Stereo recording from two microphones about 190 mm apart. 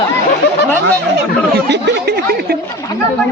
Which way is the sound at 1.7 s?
65° right (ahead or behind).